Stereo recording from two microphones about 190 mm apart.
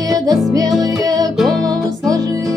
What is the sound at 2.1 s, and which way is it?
Music, 15° right (ahead or behind).